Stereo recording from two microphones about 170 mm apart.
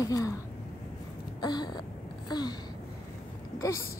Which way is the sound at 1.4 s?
25° left (ahead or behind).